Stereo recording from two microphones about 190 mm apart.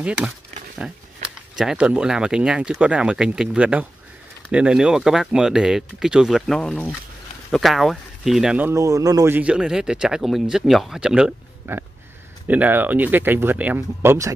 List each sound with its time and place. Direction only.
0.8 s speech: 5° right (ahead or behind)